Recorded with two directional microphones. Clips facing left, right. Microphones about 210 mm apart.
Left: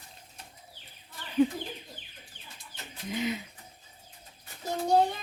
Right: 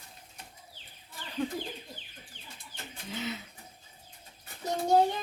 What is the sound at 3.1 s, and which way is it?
Speech, 15° left (ahead or behind).